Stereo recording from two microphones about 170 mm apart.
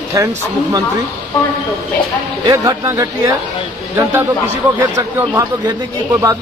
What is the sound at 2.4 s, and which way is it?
A man's voice, 20° right (ahead or behind).